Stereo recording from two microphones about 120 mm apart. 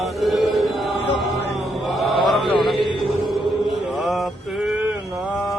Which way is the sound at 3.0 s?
Centre (ahead or behind).